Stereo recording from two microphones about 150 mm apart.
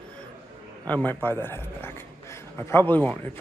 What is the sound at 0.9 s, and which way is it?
Speech, 10° left (ahead or behind).